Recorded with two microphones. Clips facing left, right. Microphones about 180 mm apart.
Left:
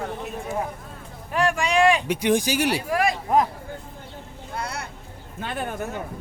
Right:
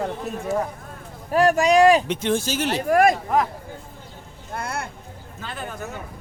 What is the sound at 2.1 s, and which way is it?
Speech, 15° left (ahead or behind).